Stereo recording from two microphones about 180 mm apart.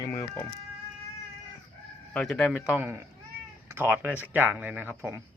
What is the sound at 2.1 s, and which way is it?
Speech, 5° left (ahead or behind).